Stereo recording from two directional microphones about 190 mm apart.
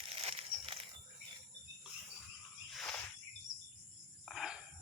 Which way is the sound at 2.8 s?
5° left (ahead or behind).